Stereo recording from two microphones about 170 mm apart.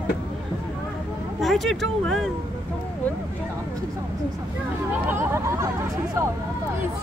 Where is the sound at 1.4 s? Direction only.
Centre (ahead or behind).